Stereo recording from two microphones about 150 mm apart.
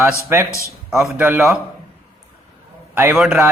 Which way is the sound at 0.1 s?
15° right (ahead or behind).